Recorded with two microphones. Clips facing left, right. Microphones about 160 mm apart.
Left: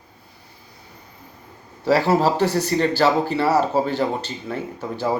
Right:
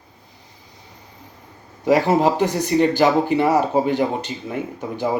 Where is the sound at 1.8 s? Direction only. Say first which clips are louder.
Right 1 dB; 15° right (ahead or behind).